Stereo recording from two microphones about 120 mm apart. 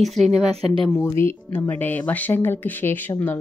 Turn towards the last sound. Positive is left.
turn(degrees=15)  # may be behind; listen again after turning